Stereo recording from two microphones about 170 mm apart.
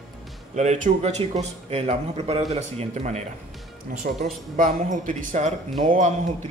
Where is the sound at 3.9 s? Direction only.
55° right (ahead or behind).